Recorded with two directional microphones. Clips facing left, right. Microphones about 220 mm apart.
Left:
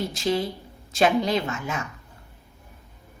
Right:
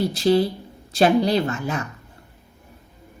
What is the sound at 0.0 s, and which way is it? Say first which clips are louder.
Speech: right 7 dB; 35° right (ahead or behind).